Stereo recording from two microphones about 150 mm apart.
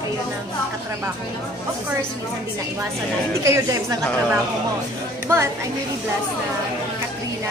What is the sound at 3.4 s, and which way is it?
Speech, 20° right (ahead or behind).